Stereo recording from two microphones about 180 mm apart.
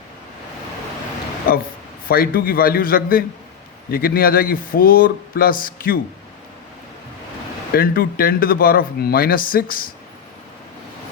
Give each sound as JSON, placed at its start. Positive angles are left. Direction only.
{"t": 1.5, "sound": "speech", "side_deg": 55}
{"t": 7.7, "sound": "speech", "side_deg": 55}